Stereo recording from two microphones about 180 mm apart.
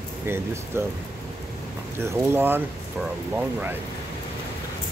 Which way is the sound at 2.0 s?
10° right (ahead or behind).